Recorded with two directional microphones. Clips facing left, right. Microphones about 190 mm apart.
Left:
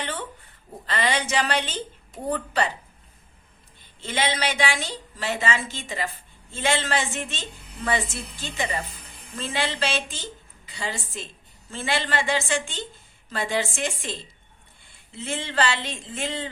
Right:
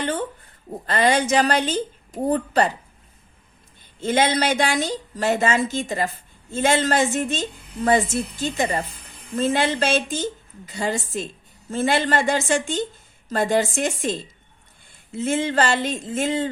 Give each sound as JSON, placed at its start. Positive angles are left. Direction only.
{"t": 0.0, "sound": "a woman's voice", "side_deg": -45}
{"t": 4.0, "sound": "a woman's voice", "side_deg": -45}